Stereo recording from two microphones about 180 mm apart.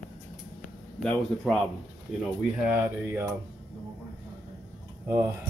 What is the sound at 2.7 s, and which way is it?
Speech, 10° right (ahead or behind).